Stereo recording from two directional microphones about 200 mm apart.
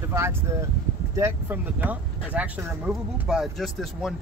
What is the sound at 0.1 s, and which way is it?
Speech, 10° right (ahead or behind).